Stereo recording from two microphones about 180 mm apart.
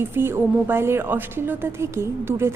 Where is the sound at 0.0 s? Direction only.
15° right (ahead or behind).